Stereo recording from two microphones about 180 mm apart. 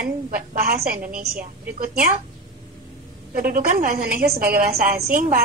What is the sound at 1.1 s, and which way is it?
A woman's voice, 50° right (ahead or behind).